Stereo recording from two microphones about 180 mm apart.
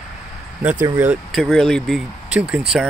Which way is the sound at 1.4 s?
Centre (ahead or behind).